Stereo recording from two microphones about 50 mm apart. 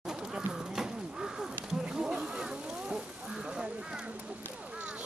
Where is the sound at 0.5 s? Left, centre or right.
Centre.